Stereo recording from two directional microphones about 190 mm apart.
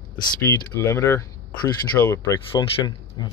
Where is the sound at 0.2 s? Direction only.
15° left (ahead or behind).